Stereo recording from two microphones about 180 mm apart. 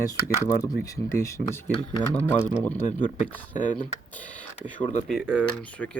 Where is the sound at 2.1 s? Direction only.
10° left (ahead or behind).